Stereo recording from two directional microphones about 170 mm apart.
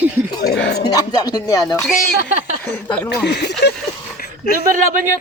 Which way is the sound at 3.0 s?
75° left (ahead or behind).